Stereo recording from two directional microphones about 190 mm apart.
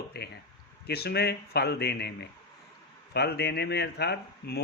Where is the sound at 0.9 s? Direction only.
60° left (ahead or behind).